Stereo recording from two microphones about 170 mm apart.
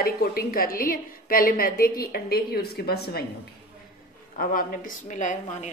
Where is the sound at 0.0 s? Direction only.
65° left (ahead or behind).